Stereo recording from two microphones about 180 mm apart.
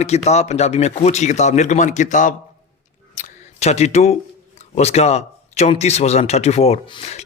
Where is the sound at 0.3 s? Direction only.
40° left (ahead or behind).